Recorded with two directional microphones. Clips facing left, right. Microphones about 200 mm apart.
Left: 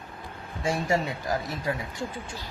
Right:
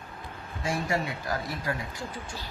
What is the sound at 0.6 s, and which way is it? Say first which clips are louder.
Speech: left 3 dB; 25° left (ahead or behind).